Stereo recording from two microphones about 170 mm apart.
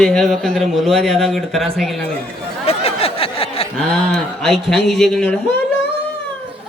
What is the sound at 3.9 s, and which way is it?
Speech, 5° left (ahead or behind).